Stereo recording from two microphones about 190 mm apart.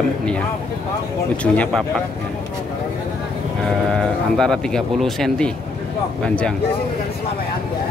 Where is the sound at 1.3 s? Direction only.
5° left (ahead or behind).